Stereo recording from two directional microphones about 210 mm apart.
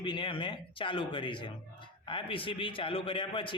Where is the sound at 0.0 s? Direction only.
20° left (ahead or behind).